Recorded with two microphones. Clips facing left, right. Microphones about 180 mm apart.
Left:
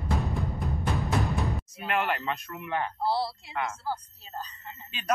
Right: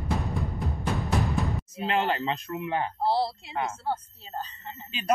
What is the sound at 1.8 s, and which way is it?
Speech, 25° right (ahead or behind).